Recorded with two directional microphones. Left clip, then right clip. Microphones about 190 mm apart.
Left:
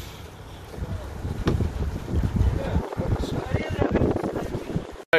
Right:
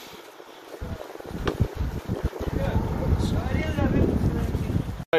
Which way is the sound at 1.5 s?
10° right (ahead or behind).